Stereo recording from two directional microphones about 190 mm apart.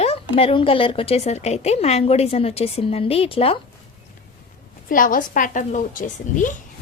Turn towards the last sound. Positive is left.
turn(degrees=45)  # may be behind; listen again after turning